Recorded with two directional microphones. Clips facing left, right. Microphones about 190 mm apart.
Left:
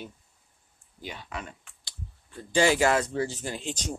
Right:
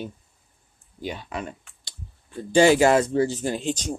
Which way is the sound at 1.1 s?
30° right (ahead or behind).